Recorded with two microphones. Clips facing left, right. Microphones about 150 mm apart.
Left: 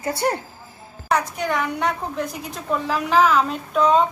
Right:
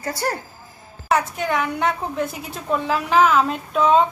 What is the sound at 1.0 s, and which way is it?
A woman's voice, centre (ahead or behind).